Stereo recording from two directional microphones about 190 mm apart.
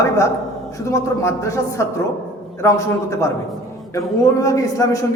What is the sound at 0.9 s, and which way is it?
A man's voice, 15° left (ahead or behind).